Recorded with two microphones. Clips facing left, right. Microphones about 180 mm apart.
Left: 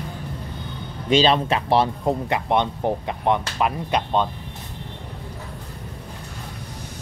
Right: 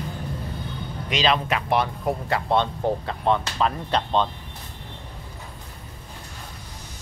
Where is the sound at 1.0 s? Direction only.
30° left (ahead or behind); by 4.3 s 10° left (ahead or behind).